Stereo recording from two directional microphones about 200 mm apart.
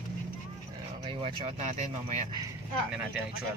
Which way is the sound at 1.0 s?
30° right (ahead or behind).